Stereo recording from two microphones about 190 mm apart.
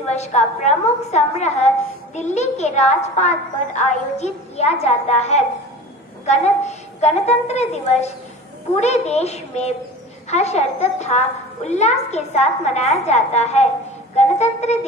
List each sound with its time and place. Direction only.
0.0 s a woman's voice: 35° left (ahead or behind)
14.1 s music: 35° left (ahead or behind)